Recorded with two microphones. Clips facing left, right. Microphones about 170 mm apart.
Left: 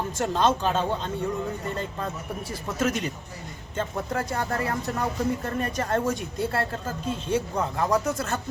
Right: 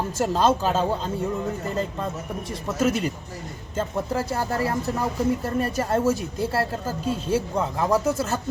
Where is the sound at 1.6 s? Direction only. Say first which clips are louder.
Right 4 dB; 30° right (ahead or behind).